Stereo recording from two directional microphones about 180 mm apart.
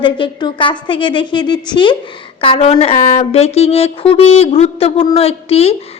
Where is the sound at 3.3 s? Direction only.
35° left (ahead or behind).